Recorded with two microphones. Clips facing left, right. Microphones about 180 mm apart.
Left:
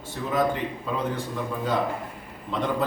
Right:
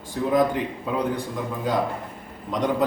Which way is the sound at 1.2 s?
15° right (ahead or behind).